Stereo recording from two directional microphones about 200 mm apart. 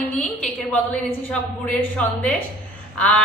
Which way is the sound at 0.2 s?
5° left (ahead or behind).